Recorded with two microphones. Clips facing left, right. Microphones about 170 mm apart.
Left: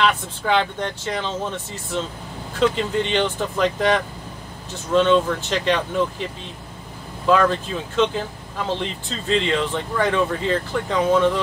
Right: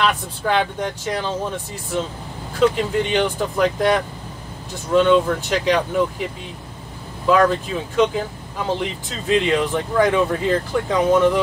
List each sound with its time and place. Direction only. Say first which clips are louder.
0.0 s speech: even; 10° right (ahead or behind)
2.7 s speech: right 2 dB; 10° right (ahead or behind)
7.2 s speech: right 2 dB; 10° right (ahead or behind)